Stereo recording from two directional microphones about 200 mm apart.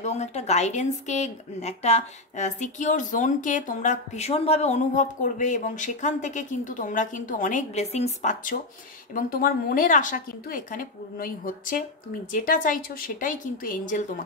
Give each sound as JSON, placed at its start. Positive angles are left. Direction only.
{"t": 0.0, "sound": "a woman's voice", "side_deg": 35}